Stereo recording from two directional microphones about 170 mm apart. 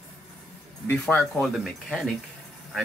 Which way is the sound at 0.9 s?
10° left (ahead or behind).